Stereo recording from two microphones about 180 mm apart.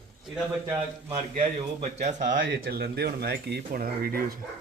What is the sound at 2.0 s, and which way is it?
Speech, 45° right (ahead or behind).